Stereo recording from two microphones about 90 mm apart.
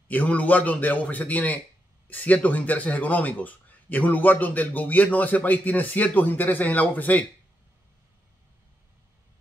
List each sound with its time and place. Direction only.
0.1 s a man's voice: 15° left (ahead or behind)